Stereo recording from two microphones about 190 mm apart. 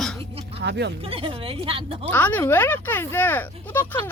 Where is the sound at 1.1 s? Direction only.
30° right (ahead or behind).